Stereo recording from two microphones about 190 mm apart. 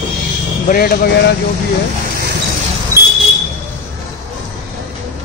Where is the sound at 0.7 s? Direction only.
50° left (ahead or behind).